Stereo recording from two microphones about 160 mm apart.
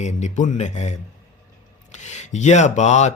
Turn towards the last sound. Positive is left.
turn(degrees=45)  # may be behind; listen again after turning